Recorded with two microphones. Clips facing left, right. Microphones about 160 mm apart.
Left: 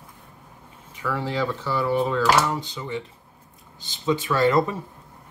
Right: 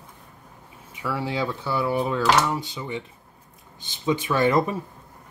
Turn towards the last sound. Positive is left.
turn(degrees=-15)  # may be behind; listen again after turning